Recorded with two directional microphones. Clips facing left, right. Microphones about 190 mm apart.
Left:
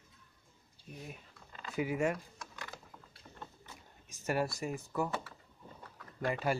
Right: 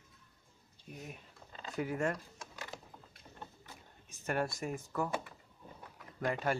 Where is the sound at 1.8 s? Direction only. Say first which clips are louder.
Left 2 dB; 10° left (ahead or behind).